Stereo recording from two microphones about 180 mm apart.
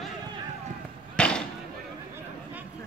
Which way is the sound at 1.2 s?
5° left (ahead or behind).